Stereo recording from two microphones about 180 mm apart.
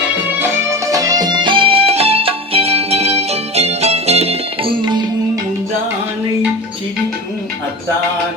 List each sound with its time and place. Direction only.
0.3 s music: 15° right (ahead or behind)